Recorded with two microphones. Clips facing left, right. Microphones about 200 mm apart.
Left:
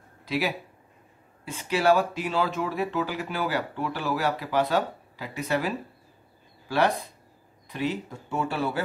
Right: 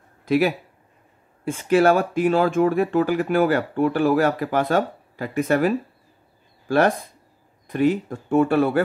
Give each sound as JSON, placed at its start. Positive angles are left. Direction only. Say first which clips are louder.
{"t": 0.2, "sound": "speech", "louder": "right 9 dB", "side_deg": -50}
{"t": 7.6, "sound": "speech", "louder": "right 10 dB", "side_deg": -50}